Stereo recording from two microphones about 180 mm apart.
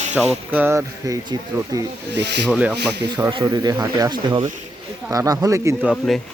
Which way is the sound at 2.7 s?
65° right (ahead or behind).